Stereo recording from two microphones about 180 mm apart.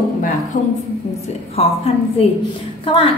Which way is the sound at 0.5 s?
45° left (ahead or behind).